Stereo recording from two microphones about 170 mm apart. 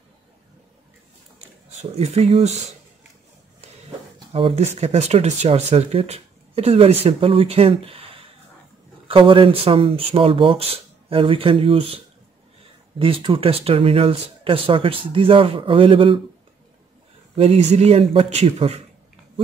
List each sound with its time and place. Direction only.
1.8 s speech: 35° right (ahead or behind)
4.3 s speech: 35° right (ahead or behind)
13.0 s speech: 30° right (ahead or behind)
17.4 s speech: 35° right (ahead or behind)